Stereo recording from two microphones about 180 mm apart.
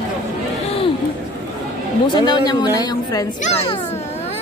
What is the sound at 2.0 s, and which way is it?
Speech, 25° left (ahead or behind).